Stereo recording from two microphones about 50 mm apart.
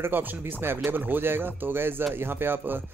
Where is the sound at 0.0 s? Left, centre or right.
Right.